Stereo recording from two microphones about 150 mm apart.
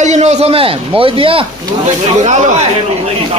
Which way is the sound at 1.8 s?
50° right (ahead or behind).